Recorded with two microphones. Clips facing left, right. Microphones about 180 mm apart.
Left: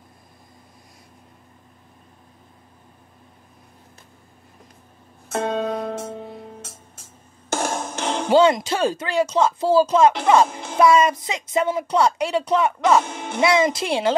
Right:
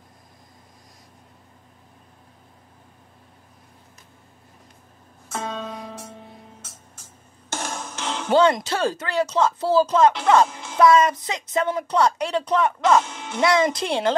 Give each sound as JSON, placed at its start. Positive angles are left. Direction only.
{"t": 5.3, "sound": "music", "side_deg": 60}
{"t": 7.5, "sound": "music", "side_deg": 50}
{"t": 8.3, "sound": "a woman's voice", "side_deg": 10}
{"t": 10.5, "sound": "music", "side_deg": 55}
{"t": 10.8, "sound": "a woman's voice", "side_deg": 10}
{"t": 13.0, "sound": "music", "side_deg": 55}
{"t": 13.4, "sound": "a woman's voice", "side_deg": 5}